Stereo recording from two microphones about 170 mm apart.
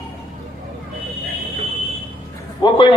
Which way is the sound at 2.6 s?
30° left (ahead or behind).